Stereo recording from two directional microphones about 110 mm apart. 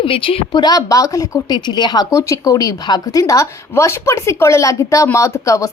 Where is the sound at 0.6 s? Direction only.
35° left (ahead or behind).